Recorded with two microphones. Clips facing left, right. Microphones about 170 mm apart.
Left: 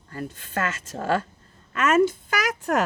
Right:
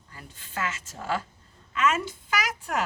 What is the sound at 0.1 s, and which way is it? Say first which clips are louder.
A woman's voice: left 9 dB; 60° left (ahead or behind).